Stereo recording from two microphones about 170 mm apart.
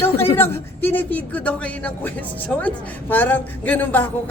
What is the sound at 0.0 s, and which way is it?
A man's voice, 15° left (ahead or behind).